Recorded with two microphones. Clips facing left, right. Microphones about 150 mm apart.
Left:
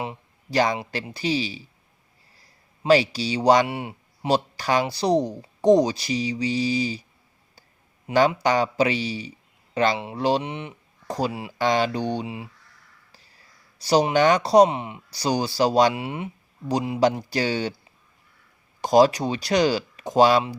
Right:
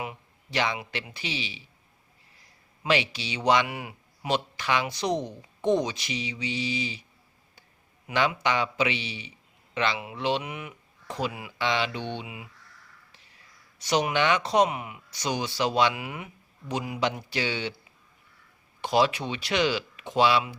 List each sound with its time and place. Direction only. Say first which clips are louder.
0.5 s speech: left 6 dB; 40° left (ahead or behind)
2.8 s speech: left 8 dB; 35° left (ahead or behind)
8.0 s speech: left 6 dB; 35° left (ahead or behind)
11.5 s speech: left 7 dB; 45° left (ahead or behind)
18.8 s speech: left 7 dB; 40° left (ahead or behind)